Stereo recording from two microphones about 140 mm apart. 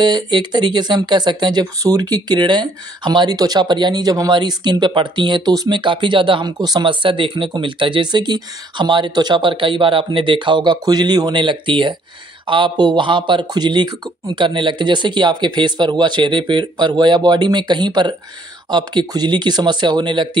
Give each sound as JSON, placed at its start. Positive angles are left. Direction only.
{"t": 0.0, "sound": "speech", "side_deg": -30}